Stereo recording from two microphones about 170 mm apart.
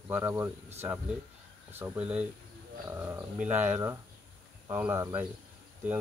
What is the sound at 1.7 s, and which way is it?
Speech, 10° right (ahead or behind).